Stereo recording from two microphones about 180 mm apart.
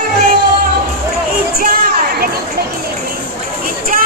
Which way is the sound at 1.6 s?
55° right (ahead or behind).